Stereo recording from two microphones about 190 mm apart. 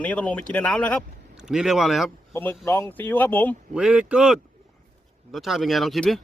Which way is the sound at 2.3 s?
10° left (ahead or behind).